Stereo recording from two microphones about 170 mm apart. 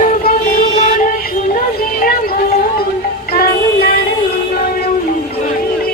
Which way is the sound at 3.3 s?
65° left (ahead or behind).